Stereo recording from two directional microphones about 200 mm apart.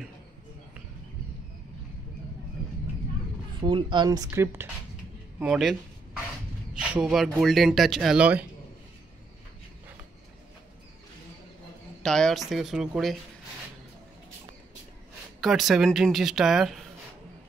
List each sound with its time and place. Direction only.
3.6 s speech: 25° right (ahead or behind); by 8.5 s 5° right (ahead or behind)
12.0 s speech: 5° left (ahead or behind)
15.4 s speech: centre (ahead or behind)